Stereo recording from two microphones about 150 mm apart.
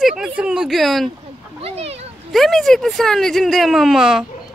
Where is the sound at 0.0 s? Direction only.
5° right (ahead or behind).